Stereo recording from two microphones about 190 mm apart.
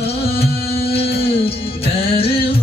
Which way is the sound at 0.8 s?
30° left (ahead or behind).